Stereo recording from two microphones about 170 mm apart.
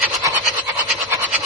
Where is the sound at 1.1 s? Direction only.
10° right (ahead or behind).